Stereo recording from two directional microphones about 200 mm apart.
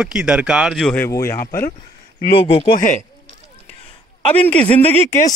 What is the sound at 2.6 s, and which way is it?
Speech, 40° left (ahead or behind).